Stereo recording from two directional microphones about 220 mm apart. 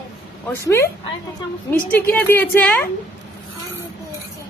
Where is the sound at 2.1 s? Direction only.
10° left (ahead or behind).